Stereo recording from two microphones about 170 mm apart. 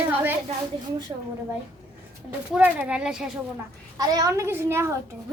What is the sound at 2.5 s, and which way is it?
Speech, 10° right (ahead or behind).